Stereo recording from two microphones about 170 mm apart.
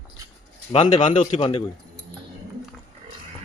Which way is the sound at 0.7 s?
30° left (ahead or behind).